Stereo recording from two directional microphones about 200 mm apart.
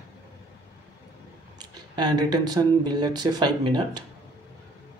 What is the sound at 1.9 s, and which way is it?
Speech, 20° right (ahead or behind).